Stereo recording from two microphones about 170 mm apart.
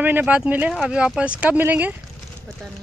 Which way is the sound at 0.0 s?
10° right (ahead or behind).